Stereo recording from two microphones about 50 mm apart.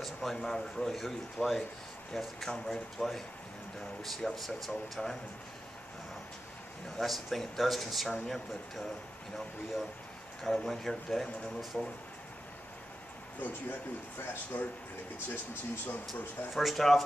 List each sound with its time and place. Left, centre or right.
0.0 s speech: centre
7.0 s speech: centre
10.4 s speech: centre
13.4 s speech: left
16.1 s speech: centre